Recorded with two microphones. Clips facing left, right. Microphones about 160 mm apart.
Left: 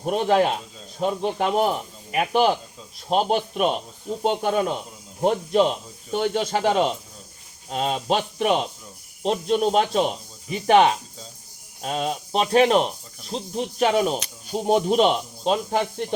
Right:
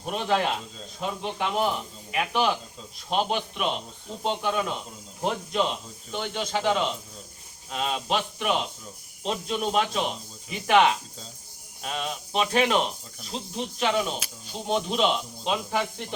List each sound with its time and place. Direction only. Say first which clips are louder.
0.0 s speech: left 6 dB; 40° left (ahead or behind)